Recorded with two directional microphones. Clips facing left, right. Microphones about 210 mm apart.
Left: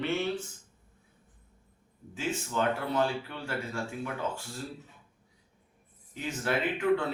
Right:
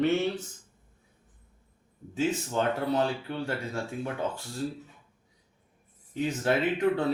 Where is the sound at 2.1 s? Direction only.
35° right (ahead or behind).